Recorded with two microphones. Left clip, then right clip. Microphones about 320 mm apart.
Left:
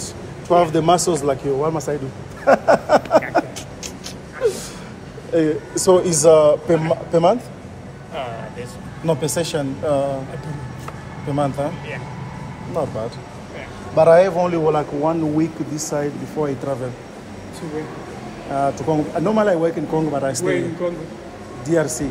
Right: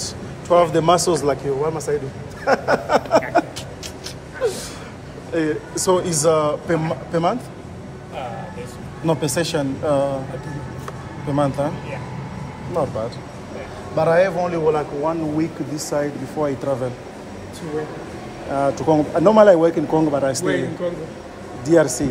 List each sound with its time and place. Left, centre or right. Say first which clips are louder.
0.5 s speech: even; centre
1.6 s a man's voice: even; centre
4.4 s gasp: left 2 dB; centre
5.3 s speech: left 3 dB; centre
9.0 s speech: even; centre
11.3 s speech: right 1 dB; centre
13.9 s speech: left 4 dB; centre
18.6 s speech: right 2 dB; centre
21.6 s speech: right 4 dB; centre